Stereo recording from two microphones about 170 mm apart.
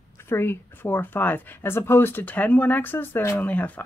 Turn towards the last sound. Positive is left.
turn(degrees=10)  # may be behind; listen again after turning